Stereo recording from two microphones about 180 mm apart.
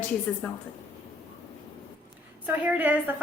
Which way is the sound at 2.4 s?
10° right (ahead or behind).